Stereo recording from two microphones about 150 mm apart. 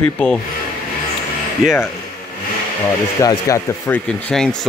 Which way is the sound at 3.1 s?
20° left (ahead or behind).